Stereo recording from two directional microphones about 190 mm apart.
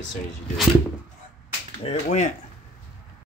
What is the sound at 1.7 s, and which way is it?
Speech, 35° left (ahead or behind).